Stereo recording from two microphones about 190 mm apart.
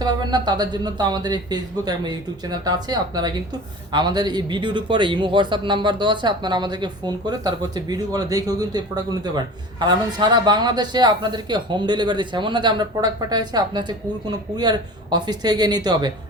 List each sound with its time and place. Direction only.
0.0 s speech: 20° right (ahead or behind)